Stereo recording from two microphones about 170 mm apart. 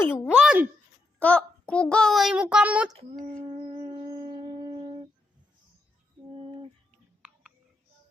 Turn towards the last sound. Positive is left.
turn(degrees=-5)  # may be behind; listen again after turning